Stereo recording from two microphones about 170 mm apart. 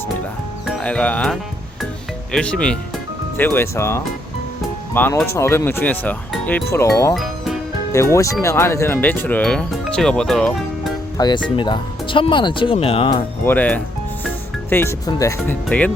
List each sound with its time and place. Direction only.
0.6 s speech: 5° left (ahead or behind)
7.1 s music: centre (ahead or behind)
7.9 s speech: 15° left (ahead or behind); by 10.9 s centre (ahead or behind)
11.2 s speech: 25° left (ahead or behind)
13.4 s speech: 10° left (ahead or behind)